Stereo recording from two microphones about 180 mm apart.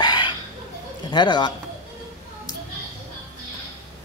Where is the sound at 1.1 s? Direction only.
25° left (ahead or behind).